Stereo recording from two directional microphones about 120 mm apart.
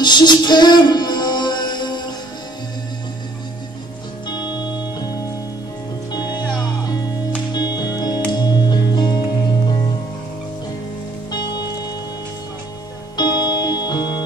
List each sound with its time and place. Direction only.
0.0 s music: 40° left (ahead or behind)
4.3 s music: 35° left (ahead or behind)
7.5 s music: 35° left (ahead or behind)
11.3 s music: 35° left (ahead or behind)
13.1 s music: 35° left (ahead or behind)